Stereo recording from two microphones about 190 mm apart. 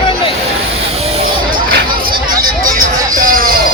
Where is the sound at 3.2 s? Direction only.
50° right (ahead or behind).